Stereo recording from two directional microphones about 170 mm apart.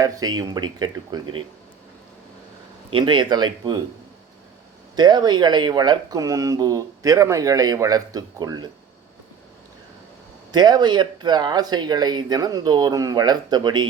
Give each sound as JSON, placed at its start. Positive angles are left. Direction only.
{"t": 0.0, "sound": "speech", "side_deg": -20}
{"t": 2.9, "sound": "speech", "side_deg": -25}
{"t": 4.9, "sound": "speech", "side_deg": -25}
{"t": 10.5, "sound": "speech", "side_deg": -25}